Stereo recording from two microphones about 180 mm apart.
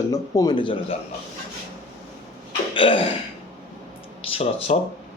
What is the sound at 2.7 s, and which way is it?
Speech, 30° left (ahead or behind).